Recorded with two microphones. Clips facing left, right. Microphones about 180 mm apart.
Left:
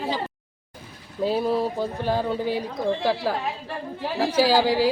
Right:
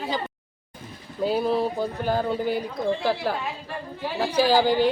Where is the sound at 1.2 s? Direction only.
Centre (ahead or behind).